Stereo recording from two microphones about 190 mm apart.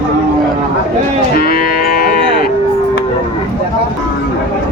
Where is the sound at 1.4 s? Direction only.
50° left (ahead or behind).